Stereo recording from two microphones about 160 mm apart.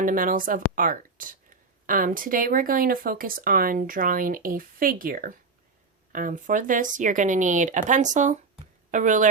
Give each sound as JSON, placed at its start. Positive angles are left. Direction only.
{"t": 0.0, "sound": "speech", "side_deg": -60}